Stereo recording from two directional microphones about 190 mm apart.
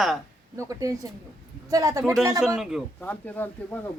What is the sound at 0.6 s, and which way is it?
Speech, 15° right (ahead or behind).